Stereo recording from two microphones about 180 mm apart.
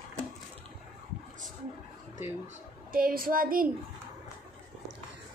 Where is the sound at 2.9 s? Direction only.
55° right (ahead or behind).